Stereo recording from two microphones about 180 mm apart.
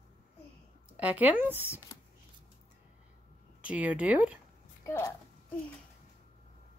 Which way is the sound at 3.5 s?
5° right (ahead or behind).